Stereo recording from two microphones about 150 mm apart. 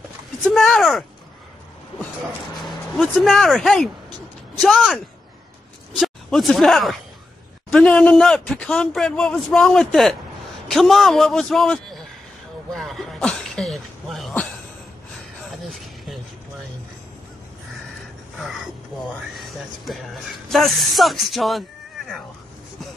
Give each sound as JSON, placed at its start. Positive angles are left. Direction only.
{"t": 0.5, "sound": "speech", "side_deg": 0}
{"t": 3.0, "sound": "a man's voice", "side_deg": 0}
{"t": 12.7, "sound": "cough", "side_deg": 0}
{"t": 15.6, "sound": "a sound", "side_deg": 0}
{"t": 19.3, "sound": "a man's voice", "side_deg": 0}